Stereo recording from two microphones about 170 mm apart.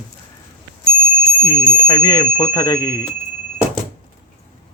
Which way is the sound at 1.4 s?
20° left (ahead or behind).